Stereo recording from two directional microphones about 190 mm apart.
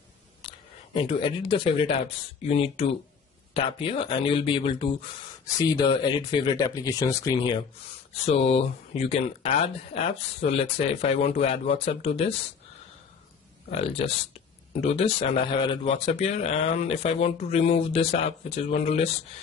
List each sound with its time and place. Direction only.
0.4 s speech: 25° left (ahead or behind)
8.3 s speech: 30° left (ahead or behind)
13.7 s speech: 30° left (ahead or behind)